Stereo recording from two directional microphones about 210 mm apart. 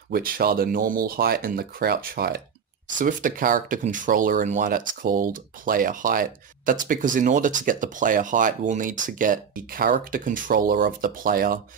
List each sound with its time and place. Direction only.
0.1 s speech: 45° right (ahead or behind)